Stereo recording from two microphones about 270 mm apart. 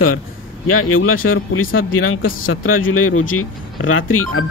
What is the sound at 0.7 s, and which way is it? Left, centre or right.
Speech, left.